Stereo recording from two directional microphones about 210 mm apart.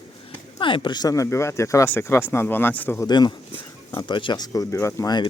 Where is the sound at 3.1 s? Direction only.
20° left (ahead or behind).